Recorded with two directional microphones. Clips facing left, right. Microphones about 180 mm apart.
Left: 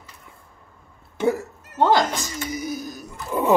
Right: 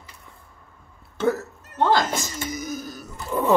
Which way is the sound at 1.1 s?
15° left (ahead or behind).